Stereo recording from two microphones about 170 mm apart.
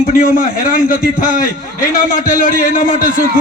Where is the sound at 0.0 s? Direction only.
55° left (ahead or behind).